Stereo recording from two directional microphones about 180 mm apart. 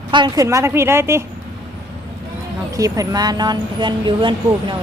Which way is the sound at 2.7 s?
20° right (ahead or behind).